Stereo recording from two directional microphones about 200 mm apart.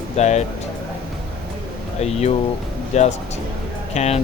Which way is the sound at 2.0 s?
35° left (ahead or behind).